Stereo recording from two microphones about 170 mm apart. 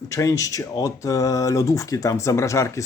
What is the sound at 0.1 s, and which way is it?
Speech, 20° left (ahead or behind).